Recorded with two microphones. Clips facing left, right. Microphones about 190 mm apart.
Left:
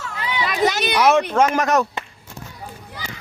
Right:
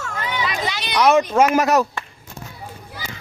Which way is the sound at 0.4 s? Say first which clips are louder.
Left 6 dB; 45° left (ahead or behind).